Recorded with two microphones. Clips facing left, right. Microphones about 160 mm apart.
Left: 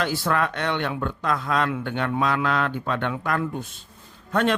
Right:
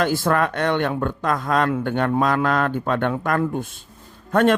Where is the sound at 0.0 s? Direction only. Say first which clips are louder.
Right 4 dB; 50° right (ahead or behind).